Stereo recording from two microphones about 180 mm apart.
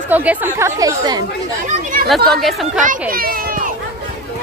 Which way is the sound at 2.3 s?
Centre (ahead or behind).